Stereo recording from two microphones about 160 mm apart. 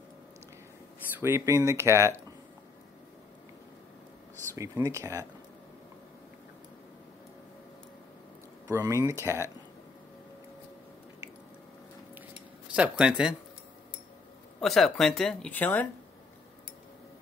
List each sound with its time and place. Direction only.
1.2 s speech: 15° right (ahead or behind)
4.6 s speech: 20° right (ahead or behind)
8.6 s speech: 20° right (ahead or behind)
12.7 s speech: 5° right (ahead or behind)
14.6 s speech: centre (ahead or behind)